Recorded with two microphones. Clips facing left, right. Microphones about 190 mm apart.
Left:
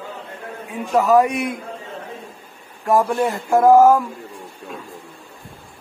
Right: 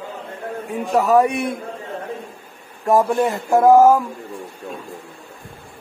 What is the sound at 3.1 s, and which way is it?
Speech, 20° right (ahead or behind).